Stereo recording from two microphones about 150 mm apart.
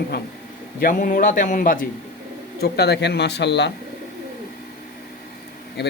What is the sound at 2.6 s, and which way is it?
Speech, 90° left.